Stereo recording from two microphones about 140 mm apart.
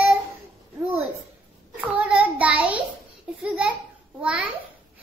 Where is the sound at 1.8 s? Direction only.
10° right (ahead or behind).